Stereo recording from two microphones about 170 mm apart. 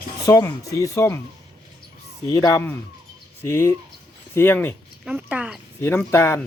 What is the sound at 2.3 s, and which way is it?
Speech, 20° left (ahead or behind).